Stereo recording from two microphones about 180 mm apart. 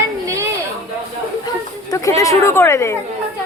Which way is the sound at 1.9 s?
20° left (ahead or behind).